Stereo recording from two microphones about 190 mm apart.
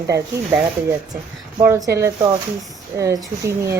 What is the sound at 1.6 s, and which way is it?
A woman's voice, 15° right (ahead or behind).